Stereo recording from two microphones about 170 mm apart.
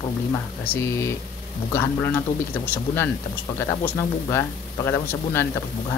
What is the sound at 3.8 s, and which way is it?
Speech, 15° left (ahead or behind).